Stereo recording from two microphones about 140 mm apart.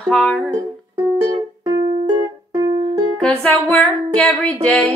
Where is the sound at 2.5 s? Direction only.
30° right (ahead or behind).